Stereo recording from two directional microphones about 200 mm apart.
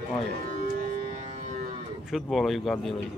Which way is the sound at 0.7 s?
40° right (ahead or behind).